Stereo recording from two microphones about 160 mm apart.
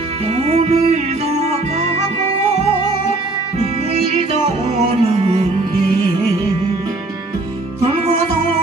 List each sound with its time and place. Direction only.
0.4 s music: 45° right (ahead or behind)
4.8 s music: 35° right (ahead or behind)